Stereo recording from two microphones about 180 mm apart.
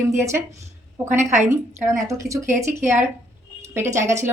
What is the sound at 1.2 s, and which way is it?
Speech, 40° right (ahead or behind).